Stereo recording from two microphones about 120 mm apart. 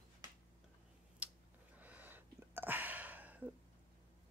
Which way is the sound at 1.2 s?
10° right (ahead or behind).